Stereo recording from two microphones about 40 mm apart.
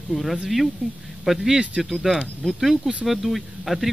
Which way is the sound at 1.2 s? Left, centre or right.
Centre.